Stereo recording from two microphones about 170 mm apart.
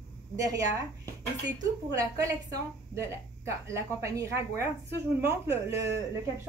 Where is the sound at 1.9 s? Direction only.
20° right (ahead or behind).